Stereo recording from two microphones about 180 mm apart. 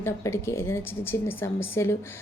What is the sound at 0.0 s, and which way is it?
A woman's voice, 15° left (ahead or behind).